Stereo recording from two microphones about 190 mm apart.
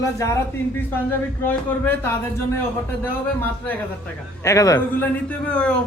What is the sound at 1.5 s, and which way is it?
A man's voice, 10° left (ahead or behind).